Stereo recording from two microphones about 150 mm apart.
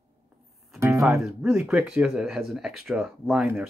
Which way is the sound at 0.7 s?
20° right (ahead or behind).